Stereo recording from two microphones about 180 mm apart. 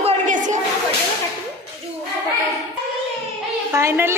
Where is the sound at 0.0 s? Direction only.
45° right (ahead or behind).